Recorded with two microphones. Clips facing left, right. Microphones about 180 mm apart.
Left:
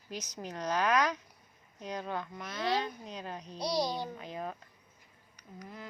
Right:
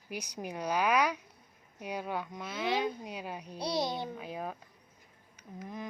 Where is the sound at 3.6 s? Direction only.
25° right (ahead or behind).